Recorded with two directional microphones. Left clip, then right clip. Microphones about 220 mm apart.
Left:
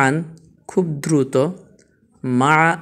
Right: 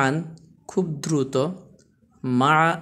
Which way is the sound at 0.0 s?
15° left (ahead or behind).